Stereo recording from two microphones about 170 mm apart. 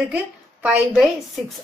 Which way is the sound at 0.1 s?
10° right (ahead or behind).